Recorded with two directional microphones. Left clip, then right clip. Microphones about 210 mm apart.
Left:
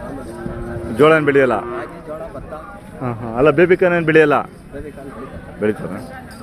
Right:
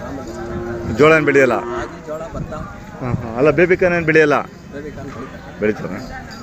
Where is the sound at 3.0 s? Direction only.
20° left (ahead or behind).